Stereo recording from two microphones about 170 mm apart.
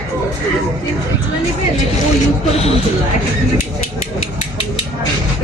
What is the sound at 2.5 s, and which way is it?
Speech, 35° left (ahead or behind).